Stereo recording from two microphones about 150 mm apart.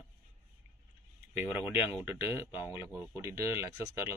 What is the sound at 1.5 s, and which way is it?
Speech, 10° right (ahead or behind).